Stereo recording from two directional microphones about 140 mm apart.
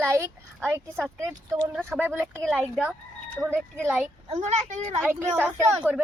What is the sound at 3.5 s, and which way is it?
Speech, 15° right (ahead or behind).